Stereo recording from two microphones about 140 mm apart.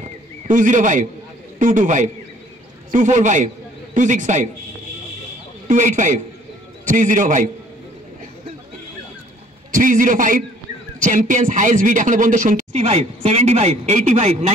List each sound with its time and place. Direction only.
0.5 s a man's voice: 70° right (ahead or behind)
5.7 s speech: 65° right (ahead or behind)
9.8 s a man's voice: 70° right (ahead or behind); by 14.4 s 55° right (ahead or behind)